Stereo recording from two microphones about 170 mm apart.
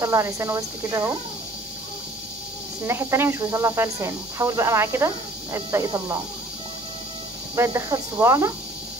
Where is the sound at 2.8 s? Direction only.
15° right (ahead or behind).